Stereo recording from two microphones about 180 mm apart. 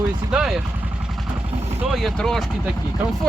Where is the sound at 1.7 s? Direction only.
5° right (ahead or behind).